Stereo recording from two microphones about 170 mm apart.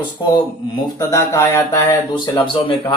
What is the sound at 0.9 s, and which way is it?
Speech, 15° left (ahead or behind).